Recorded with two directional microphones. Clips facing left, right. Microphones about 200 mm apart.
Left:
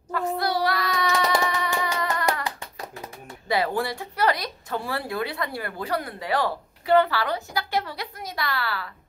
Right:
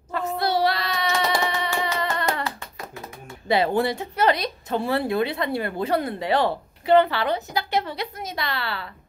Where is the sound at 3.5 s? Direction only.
25° right (ahead or behind).